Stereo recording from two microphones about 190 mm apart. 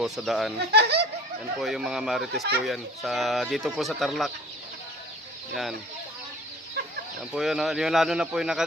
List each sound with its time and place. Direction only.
0.0 s speech: centre (ahead or behind)
0.7 s speech: 60° right (ahead or behind)
1.5 s speech: centre (ahead or behind)
2.3 s speech: 60° right (ahead or behind)
2.6 s speech: centre (ahead or behind)
7.3 s speech: centre (ahead or behind)